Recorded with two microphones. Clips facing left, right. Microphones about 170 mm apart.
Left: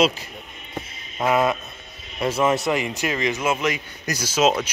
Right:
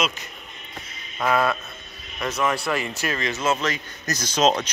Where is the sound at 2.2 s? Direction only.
25° left (ahead or behind).